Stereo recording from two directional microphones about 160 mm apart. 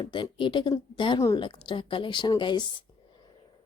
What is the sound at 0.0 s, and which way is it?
A woman's voice, 30° left (ahead or behind).